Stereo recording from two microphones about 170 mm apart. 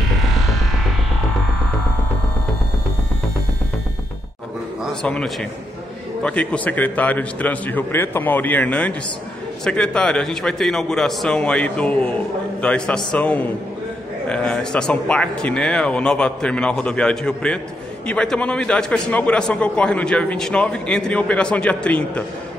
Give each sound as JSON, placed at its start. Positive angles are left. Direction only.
{"t": 4.8, "sound": "a man's voice", "side_deg": 5}